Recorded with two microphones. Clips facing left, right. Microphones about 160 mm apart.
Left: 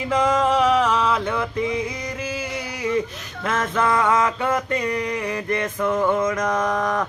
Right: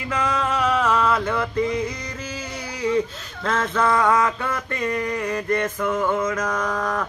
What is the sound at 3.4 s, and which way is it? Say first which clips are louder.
Mantra: even; 10° left (ahead or behind).